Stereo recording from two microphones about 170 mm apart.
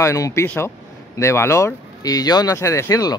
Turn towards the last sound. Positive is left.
turn(degrees=20)  # may be behind; listen again after turning